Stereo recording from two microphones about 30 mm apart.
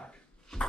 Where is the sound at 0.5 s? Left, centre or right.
Centre.